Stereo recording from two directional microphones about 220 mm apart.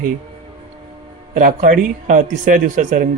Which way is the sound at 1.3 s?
35° right (ahead or behind).